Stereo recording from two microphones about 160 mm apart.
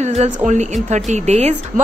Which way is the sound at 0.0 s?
45° right (ahead or behind).